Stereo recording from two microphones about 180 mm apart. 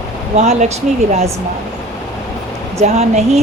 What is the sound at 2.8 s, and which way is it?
Speech, 35° right (ahead or behind).